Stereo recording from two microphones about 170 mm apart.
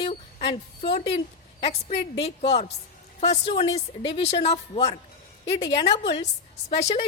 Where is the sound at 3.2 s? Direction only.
35° left (ahead or behind).